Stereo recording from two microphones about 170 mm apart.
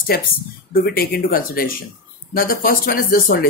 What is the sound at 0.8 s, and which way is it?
Speech, 60° left (ahead or behind).